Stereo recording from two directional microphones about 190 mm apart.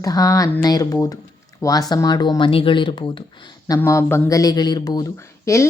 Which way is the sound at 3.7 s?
15° left (ahead or behind).